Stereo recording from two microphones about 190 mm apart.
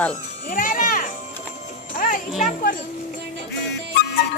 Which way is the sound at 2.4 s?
45° left (ahead or behind).